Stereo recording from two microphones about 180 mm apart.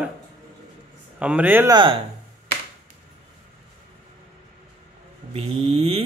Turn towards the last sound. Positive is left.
turn(degrees=-35)  # may be behind; listen again after turning